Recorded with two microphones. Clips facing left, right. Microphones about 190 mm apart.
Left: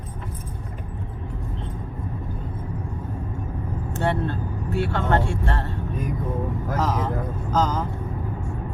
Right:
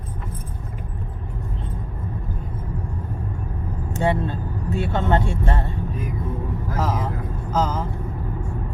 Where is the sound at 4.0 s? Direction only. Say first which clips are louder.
Right 2 dB; 15° right (ahead or behind).